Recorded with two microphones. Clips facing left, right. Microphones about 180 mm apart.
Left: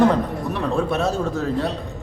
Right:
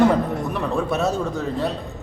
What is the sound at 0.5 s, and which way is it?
A man's voice, centre (ahead or behind).